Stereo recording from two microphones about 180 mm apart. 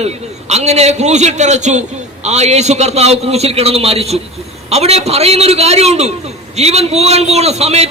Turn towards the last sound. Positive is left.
turn(degrees=-35)  # may be behind; listen again after turning